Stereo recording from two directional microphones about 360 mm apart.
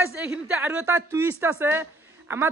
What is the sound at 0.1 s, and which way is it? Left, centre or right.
A woman's voice, centre.